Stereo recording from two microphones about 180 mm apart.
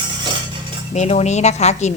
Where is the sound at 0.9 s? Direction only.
35° left (ahead or behind).